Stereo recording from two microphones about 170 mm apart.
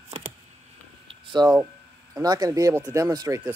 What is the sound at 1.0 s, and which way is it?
Hum, 30° right (ahead or behind).